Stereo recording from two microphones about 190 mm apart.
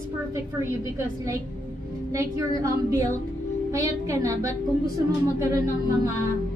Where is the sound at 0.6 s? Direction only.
15° right (ahead or behind).